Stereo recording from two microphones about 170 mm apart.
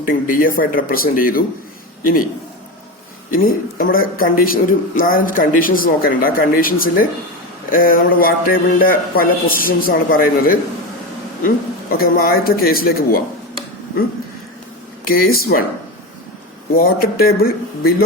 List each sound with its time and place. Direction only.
0.0 s a man's voice: 55° left (ahead or behind)
3.2 s a man's voice: 55° left (ahead or behind)
15.0 s a man's voice: 60° left (ahead or behind)
16.7 s a man's voice: 60° left (ahead or behind)